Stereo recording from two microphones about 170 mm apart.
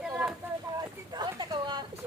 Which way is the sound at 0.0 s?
5° right (ahead or behind).